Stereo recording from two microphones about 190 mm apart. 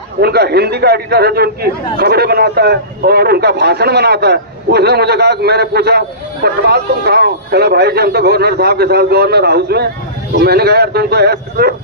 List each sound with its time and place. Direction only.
0.2 s a man's voice: 55° right (ahead or behind)